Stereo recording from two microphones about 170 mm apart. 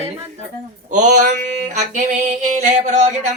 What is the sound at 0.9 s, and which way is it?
Music, 45° right (ahead or behind).